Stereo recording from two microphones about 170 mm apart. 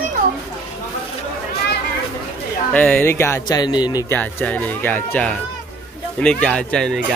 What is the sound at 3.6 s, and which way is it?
Speech, 25° left (ahead or behind).